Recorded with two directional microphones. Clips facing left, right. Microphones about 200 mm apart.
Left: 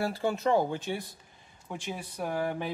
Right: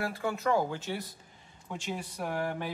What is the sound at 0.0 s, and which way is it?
Speech, 30° left (ahead or behind).